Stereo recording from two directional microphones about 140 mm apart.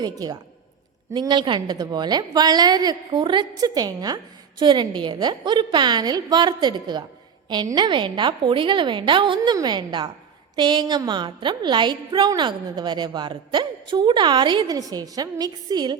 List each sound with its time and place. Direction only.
0.0 s a woman's voice: 30° right (ahead or behind)